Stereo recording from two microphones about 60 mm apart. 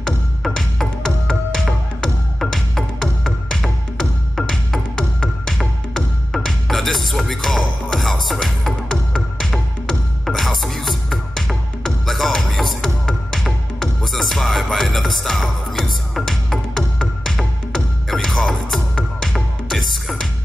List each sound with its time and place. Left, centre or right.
0.0 s music: centre
4.4 s music: centre